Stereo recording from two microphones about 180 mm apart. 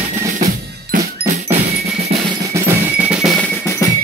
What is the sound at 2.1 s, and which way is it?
Drum, 35° right (ahead or behind).